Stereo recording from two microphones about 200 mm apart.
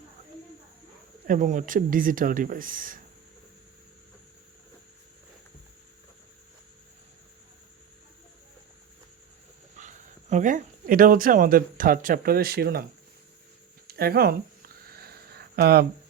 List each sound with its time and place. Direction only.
1.3 s speech: 40° right (ahead or behind)
9.7 s speech: 35° right (ahead or behind)
13.8 s a sound: 50° right (ahead or behind)